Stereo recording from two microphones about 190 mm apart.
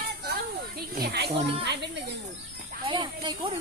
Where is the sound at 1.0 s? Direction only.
60° right (ahead or behind).